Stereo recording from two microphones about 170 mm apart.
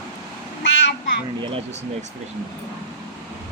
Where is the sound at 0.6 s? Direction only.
90° left.